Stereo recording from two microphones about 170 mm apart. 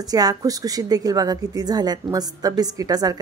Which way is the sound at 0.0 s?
20° right (ahead or behind).